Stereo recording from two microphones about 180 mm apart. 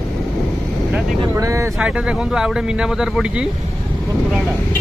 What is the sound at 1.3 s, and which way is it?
Speech, 15° right (ahead or behind).